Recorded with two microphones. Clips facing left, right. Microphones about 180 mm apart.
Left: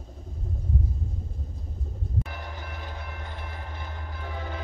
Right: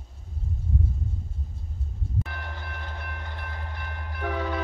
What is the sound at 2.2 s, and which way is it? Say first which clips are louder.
Vehicle: even; 15° left (ahead or behind).